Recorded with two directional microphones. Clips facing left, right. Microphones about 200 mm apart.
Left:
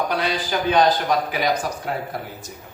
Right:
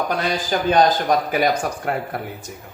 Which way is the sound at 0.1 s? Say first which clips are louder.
Right 2 dB; 45° right (ahead or behind).